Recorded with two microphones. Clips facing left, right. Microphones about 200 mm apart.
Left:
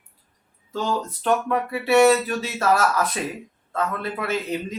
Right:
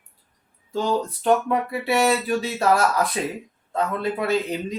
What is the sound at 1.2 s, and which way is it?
Speech, 15° right (ahead or behind).